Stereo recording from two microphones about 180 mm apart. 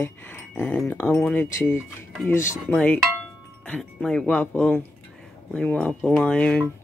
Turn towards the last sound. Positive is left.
turn(degrees=5)  # may be behind; listen again after turning